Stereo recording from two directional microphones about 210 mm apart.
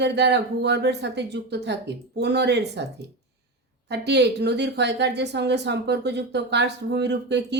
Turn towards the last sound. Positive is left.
turn(degrees=-55)  # may be behind; listen again after turning